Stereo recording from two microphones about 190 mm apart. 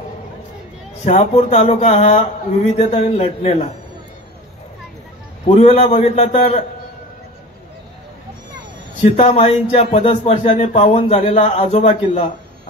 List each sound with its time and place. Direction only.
1.0 s speech: 35° left (ahead or behind)
5.6 s speech: 35° left (ahead or behind)
9.0 s speech: 35° left (ahead or behind)